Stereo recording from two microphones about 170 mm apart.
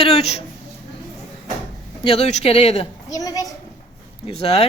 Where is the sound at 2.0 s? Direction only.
40° left (ahead or behind).